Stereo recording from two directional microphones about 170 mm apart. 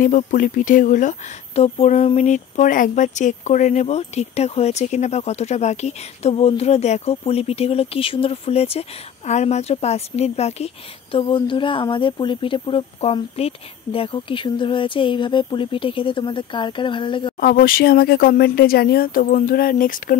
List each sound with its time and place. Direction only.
0.0 s speech: 50° left (ahead or behind); by 17.4 s 30° left (ahead or behind)
17.4 s speech: 60° left (ahead or behind)